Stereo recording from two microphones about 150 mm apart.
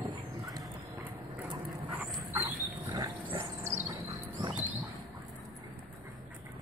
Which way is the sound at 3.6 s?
15° right (ahead or behind).